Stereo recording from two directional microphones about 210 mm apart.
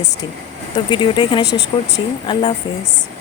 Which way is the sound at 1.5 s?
55° left (ahead or behind).